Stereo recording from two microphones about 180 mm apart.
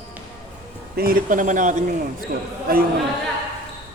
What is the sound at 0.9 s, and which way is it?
Speech, 55° right (ahead or behind).